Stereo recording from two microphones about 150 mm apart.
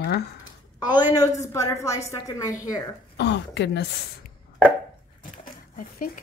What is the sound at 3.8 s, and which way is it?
Speech, 90° left.